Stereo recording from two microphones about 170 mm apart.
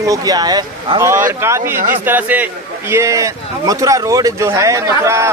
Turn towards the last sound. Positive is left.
turn(degrees=-15)  # may be behind; listen again after turning